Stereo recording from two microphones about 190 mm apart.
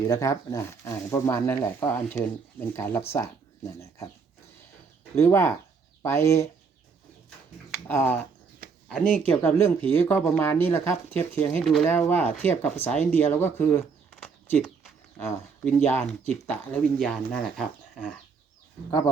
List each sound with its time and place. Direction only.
0.1 s speech: 15° left (ahead or behind)
5.1 s speech: 15° left (ahead or behind)
7.9 s speech: 10° left (ahead or behind)
15.2 s speech: 10° left (ahead or behind)
18.9 s speech: 20° left (ahead or behind)